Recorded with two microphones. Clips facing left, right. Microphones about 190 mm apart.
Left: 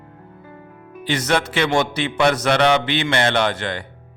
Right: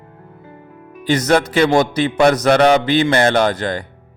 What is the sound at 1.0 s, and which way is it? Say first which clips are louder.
A man's voice: right 6 dB; 40° right (ahead or behind).